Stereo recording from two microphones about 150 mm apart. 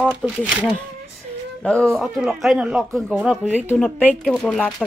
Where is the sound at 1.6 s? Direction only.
5° left (ahead or behind).